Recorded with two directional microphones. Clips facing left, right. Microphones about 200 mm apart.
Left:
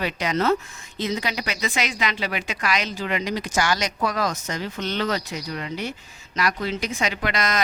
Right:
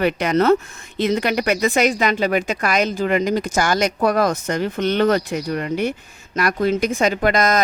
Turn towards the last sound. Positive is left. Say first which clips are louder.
# right 8 dB
turn(degrees=-45)  # may be behind; listen again after turning